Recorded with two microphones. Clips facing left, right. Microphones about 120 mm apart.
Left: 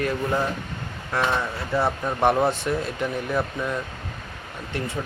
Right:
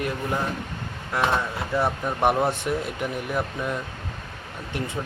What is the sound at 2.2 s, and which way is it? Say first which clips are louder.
Speech: left 2 dB; 15° right (ahead or behind).